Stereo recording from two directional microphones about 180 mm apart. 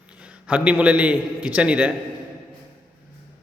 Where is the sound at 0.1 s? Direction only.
5° right (ahead or behind).